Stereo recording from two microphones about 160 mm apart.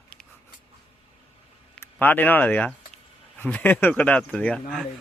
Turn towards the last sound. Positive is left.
turn(degrees=5)  # may be behind; listen again after turning